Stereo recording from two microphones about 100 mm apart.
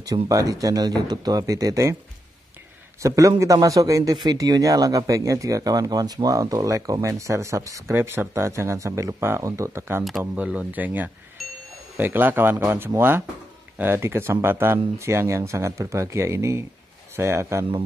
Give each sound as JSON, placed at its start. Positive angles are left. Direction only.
{"t": 0.0, "sound": "a man's voice", "side_deg": -35}
{"t": 3.0, "sound": "a man's voice", "side_deg": -35}
{"t": 7.9, "sound": "speech", "side_deg": -20}
{"t": 10.3, "sound": "speech", "side_deg": -10}
{"t": 11.4, "sound": "music", "side_deg": 0}
{"t": 12.0, "sound": "speech", "side_deg": -20}